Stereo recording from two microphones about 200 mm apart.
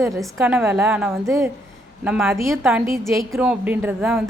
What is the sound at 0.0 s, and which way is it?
A woman's voice, 10° right (ahead or behind).